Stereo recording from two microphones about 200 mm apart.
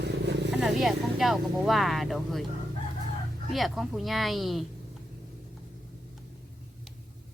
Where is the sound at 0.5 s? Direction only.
Centre (ahead or behind).